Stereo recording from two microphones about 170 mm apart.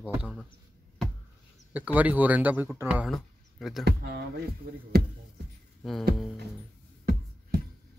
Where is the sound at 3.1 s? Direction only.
Centre (ahead or behind).